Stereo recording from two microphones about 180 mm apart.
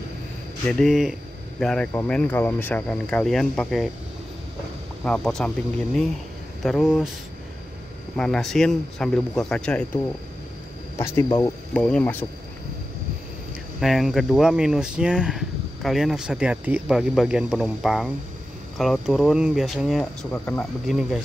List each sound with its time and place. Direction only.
0.7 s speech: centre (ahead or behind)
5.0 s speech: 5° left (ahead or behind)
6.6 s speech: centre (ahead or behind)
8.2 s speech: centre (ahead or behind)
11.0 s speech: 15° left (ahead or behind)
11.7 s speech: 5° left (ahead or behind)
13.7 s speech: centre (ahead or behind)